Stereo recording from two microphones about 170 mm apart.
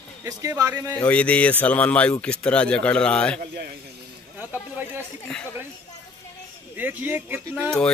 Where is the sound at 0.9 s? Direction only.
10° left (ahead or behind).